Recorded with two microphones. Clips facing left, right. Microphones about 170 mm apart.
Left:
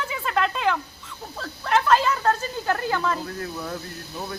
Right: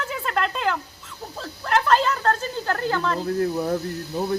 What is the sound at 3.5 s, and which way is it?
Speech, 35° right (ahead or behind).